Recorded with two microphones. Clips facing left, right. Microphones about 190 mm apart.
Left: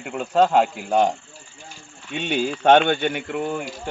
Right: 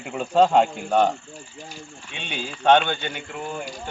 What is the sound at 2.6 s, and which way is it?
Speech, 55° left (ahead or behind).